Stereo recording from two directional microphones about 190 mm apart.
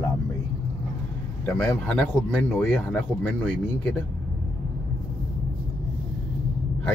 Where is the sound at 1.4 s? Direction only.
5° left (ahead or behind).